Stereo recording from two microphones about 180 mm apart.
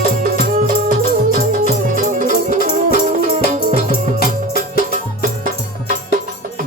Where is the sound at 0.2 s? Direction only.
50° right (ahead or behind).